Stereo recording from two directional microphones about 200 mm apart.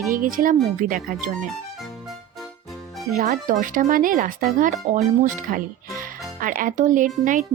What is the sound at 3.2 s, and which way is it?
A child's voice, 40° right (ahead or behind).